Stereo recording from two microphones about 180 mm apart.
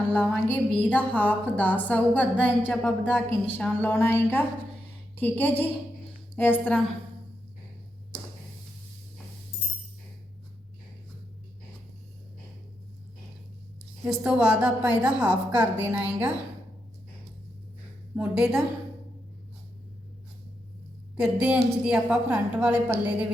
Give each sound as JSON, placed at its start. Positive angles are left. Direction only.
{"t": 0.1, "sound": "a woman's voice", "side_deg": 5}
{"t": 14.0, "sound": "a woman's voice", "side_deg": -5}
{"t": 18.2, "sound": "a woman's voice", "side_deg": -5}
{"t": 21.2, "sound": "a woman's voice", "side_deg": -5}